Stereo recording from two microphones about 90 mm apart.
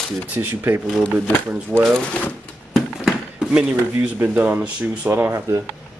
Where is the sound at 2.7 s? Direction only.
5° right (ahead or behind).